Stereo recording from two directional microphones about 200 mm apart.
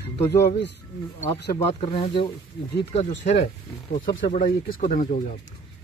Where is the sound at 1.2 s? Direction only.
30° left (ahead or behind).